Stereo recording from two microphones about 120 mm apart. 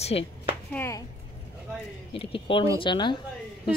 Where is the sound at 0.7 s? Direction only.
20° left (ahead or behind).